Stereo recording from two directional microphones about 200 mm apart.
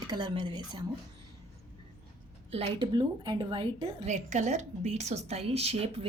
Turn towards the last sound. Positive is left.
turn(degrees=-30)  # may be behind; listen again after turning